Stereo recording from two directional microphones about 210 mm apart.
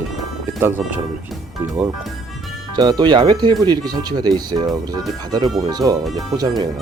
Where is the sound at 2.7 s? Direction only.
20° right (ahead or behind).